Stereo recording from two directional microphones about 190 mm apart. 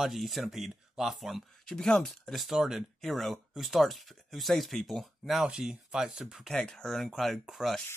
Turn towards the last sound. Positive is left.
turn(degrees=0)  # may be behind; listen again after turning